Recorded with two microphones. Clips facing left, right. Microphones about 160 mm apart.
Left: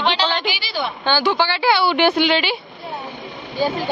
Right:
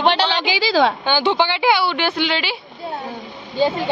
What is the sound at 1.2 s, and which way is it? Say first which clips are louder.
Speech: right 2 dB; 20° right (ahead or behind).